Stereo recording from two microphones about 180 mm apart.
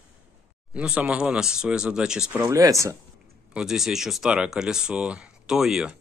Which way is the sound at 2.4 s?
20° right (ahead or behind).